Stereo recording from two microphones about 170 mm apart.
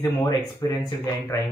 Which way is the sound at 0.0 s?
25° left (ahead or behind).